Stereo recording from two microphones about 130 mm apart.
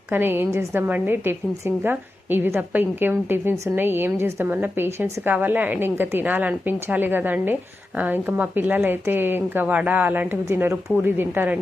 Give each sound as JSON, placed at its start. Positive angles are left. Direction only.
{"t": 0.1, "sound": "a woman's voice", "side_deg": -15}